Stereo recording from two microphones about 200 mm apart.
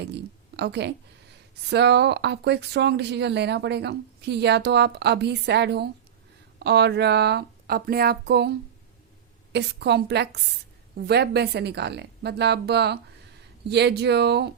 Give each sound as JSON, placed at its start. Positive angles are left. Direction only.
{"t": 0.1, "sound": "speech", "side_deg": -55}